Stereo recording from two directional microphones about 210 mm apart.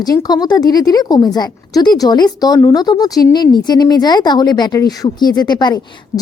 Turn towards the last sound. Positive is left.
turn(degrees=20)  # may be behind; listen again after turning